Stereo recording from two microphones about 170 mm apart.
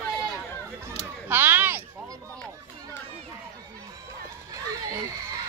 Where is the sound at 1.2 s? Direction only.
10° right (ahead or behind).